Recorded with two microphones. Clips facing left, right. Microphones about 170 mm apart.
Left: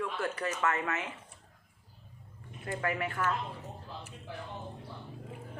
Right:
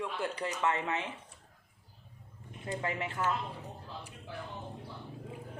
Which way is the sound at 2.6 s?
20° right (ahead or behind).